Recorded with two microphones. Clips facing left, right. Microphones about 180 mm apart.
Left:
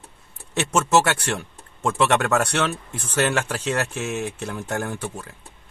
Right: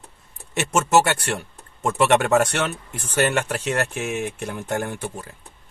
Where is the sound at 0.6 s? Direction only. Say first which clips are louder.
Right 1 dB; 15° right (ahead or behind).